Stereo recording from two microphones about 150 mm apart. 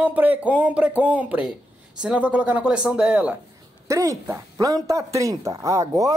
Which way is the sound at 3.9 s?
20° right (ahead or behind).